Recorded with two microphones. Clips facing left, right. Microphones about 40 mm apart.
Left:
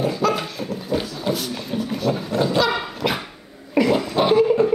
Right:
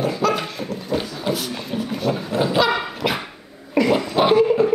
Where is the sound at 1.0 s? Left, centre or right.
Centre.